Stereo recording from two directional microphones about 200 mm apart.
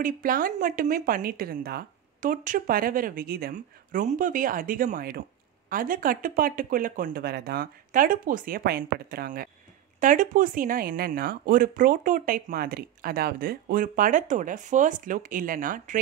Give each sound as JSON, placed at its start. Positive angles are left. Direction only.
{"t": 0.0, "sound": "speech", "side_deg": -45}